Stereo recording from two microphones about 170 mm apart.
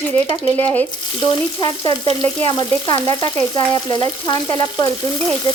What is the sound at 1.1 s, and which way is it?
Frying, 25° left (ahead or behind).